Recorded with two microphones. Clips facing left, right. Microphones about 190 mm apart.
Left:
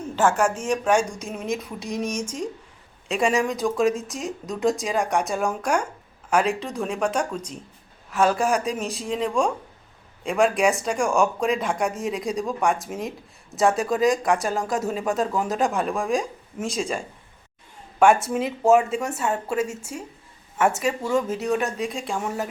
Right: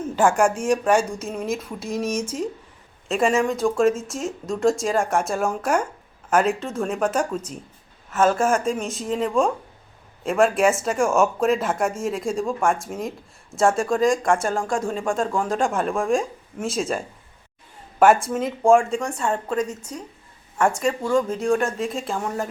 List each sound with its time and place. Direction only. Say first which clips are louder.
0.2 s speech: right 2 dB; 10° right (ahead or behind)
18.0 s speech: right 1 dB; centre (ahead or behind)